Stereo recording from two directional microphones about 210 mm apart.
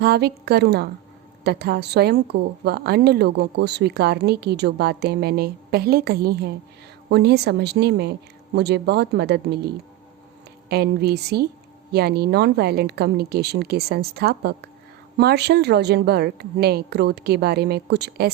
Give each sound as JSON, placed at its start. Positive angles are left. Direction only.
{"t": 0.0, "sound": "a woman's voice", "side_deg": -50}